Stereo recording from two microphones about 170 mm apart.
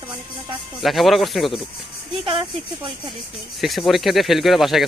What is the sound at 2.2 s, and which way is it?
Speech, 30° right (ahead or behind).